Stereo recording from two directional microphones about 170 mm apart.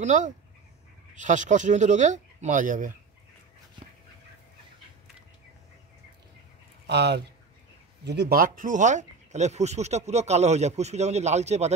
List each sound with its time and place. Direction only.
0.0 s speech: 45° right (ahead or behind)
6.9 s speech: 80° right; by 11.7 s 40° right (ahead or behind)